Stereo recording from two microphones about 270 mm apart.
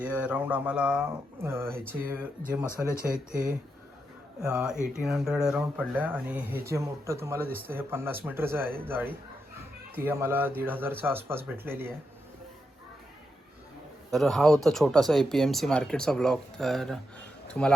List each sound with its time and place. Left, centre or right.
0.0 s speech: centre
3.0 s speech: right
4.4 s speech: centre
14.1 s speech: centre